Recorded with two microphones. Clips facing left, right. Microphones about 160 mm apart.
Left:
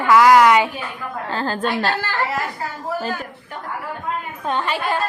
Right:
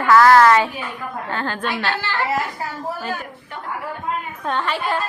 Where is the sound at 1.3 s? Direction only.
35° left (ahead or behind).